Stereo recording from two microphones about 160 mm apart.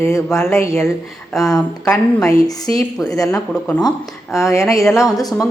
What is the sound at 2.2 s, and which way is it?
A woman's voice, 20° left (ahead or behind).